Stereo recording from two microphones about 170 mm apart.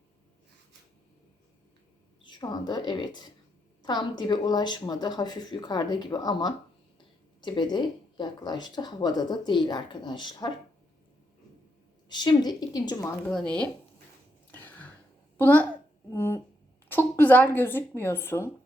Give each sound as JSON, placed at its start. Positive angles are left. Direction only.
{"t": 2.2, "sound": "speech", "side_deg": 25}
{"t": 12.0, "sound": "speech", "side_deg": 25}
{"t": 14.5, "sound": "a sound", "side_deg": 10}
{"t": 15.4, "sound": "speech", "side_deg": 10}
{"t": 16.1, "sound": "a sound", "side_deg": 15}
{"t": 16.9, "sound": "speech", "side_deg": 10}